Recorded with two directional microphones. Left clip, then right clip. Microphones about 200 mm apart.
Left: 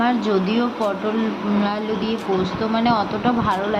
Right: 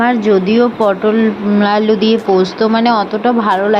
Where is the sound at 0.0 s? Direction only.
25° right (ahead or behind).